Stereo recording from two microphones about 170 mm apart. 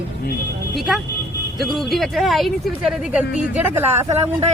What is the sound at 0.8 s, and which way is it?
Speech, centre (ahead or behind).